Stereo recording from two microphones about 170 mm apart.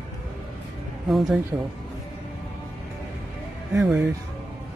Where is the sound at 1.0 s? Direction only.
Centre (ahead or behind).